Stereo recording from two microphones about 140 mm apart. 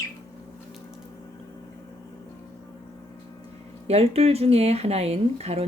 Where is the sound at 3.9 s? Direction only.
45° right (ahead or behind).